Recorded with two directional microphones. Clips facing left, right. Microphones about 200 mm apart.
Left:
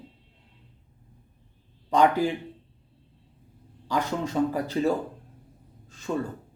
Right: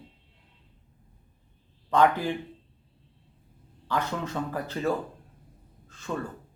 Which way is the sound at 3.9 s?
10° left (ahead or behind).